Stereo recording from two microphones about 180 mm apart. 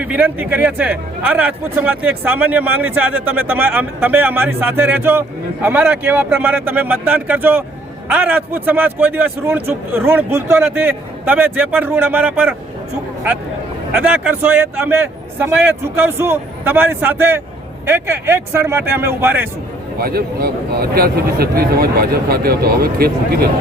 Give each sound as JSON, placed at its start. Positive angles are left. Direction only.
{"t": 0.0, "sound": "speech", "side_deg": -10}
{"t": 13.9, "sound": "speech", "side_deg": -10}
{"t": 20.0, "sound": "speech", "side_deg": -55}